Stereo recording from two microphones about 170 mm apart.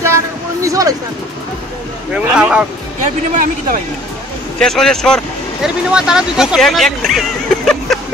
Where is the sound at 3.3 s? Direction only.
55° right (ahead or behind).